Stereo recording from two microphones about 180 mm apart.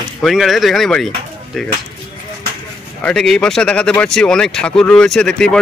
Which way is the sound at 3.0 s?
5° left (ahead or behind).